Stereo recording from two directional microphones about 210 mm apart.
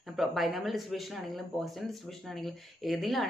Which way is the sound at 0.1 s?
Centre (ahead or behind).